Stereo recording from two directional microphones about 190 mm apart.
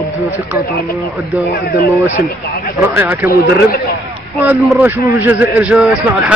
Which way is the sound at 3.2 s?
55° left (ahead or behind).